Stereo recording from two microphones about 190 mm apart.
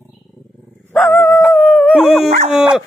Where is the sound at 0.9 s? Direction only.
5° left (ahead or behind).